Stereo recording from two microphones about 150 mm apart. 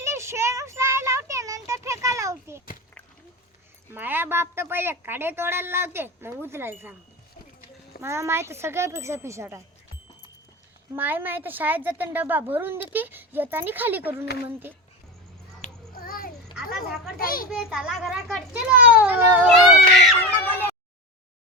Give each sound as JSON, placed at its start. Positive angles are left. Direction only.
{"t": 0.0, "sound": "child singing", "side_deg": -20}
{"t": 3.9, "sound": "a woman's voice", "side_deg": -15}
{"t": 8.0, "sound": "a woman's voice", "side_deg": -20}
{"t": 10.9, "sound": "a woman's voice", "side_deg": -15}
{"t": 15.6, "sound": "a sound", "side_deg": 50}
{"t": 16.0, "sound": "a sound", "side_deg": 75}
{"t": 17.2, "sound": "a child's voice", "side_deg": 75}
{"t": 17.5, "sound": "a child's voice", "side_deg": 0}
{"t": 19.5, "sound": "a sound", "side_deg": 0}